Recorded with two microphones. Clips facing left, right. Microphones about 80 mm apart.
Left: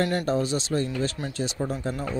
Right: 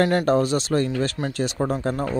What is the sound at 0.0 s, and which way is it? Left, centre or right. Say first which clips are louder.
Speech: right 6 dB; right.